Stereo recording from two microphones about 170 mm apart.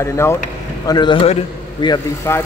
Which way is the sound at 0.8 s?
25° left (ahead or behind).